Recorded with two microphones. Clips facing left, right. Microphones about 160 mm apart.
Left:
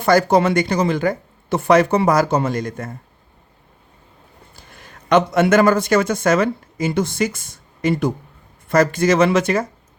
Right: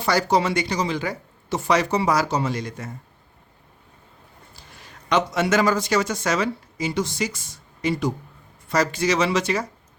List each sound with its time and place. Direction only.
0.0 s speech: 50° left (ahead or behind)
4.5 s a man's voice: 55° left (ahead or behind)